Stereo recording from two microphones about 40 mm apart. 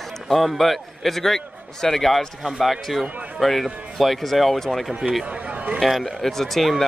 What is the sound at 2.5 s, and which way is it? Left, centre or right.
A man's voice, centre.